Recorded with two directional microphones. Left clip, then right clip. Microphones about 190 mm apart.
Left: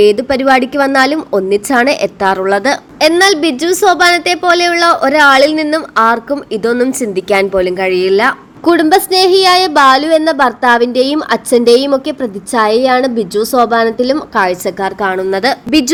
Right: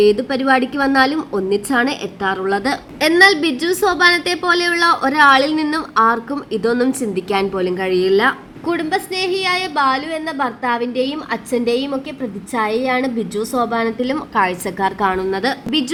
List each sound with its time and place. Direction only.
0.0 s a woman's voice: 25° left (ahead or behind)
15.3 s a woman's voice: 25° left (ahead or behind)